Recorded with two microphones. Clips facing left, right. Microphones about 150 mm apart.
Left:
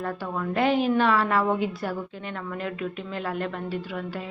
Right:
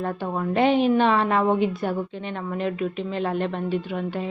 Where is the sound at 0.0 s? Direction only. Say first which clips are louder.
Right 3 dB; 25° right (ahead or behind).